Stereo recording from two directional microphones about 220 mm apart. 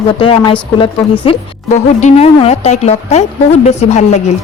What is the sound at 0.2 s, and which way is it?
Speech, 25° left (ahead or behind).